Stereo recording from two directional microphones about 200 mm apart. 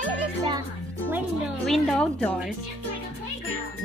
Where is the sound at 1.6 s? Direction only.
Centre (ahead or behind).